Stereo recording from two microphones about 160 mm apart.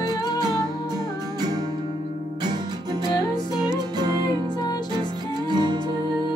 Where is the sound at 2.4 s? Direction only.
25° right (ahead or behind).